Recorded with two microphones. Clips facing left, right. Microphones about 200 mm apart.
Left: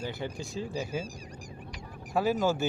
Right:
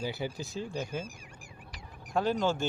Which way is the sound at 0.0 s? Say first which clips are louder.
Right 1 dB; 5° right (ahead or behind).